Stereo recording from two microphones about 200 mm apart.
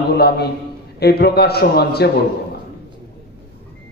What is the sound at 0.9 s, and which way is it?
A man's voice, 50° left (ahead or behind).